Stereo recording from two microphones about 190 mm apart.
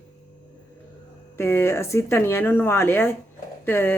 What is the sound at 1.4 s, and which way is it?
Speech, 15° left (ahead or behind).